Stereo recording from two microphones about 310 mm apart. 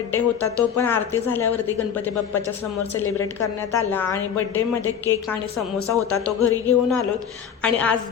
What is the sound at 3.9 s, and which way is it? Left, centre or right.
Speech, centre.